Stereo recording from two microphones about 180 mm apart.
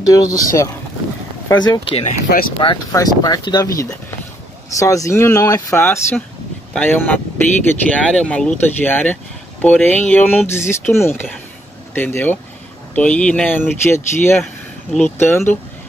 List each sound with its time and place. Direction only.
0.0 s speech: 20° left (ahead or behind)